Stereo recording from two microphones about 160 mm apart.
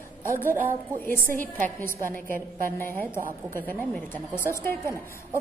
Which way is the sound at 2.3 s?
60° right (ahead or behind).